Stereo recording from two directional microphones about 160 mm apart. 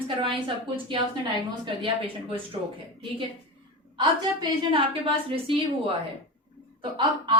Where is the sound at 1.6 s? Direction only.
35° right (ahead or behind).